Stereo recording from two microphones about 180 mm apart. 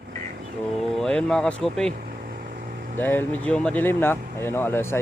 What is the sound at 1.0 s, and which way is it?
Speech, 5° left (ahead or behind).